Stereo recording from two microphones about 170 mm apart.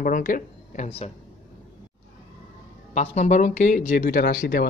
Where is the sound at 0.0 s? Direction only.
55° left (ahead or behind).